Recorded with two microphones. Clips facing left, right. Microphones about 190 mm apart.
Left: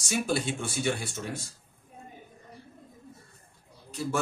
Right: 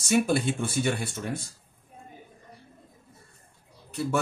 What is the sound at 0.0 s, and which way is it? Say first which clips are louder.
Speech: right 5 dB; 60° right (ahead or behind).